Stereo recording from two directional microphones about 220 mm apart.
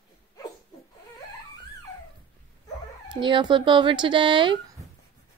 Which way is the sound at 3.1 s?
20° right (ahead or behind).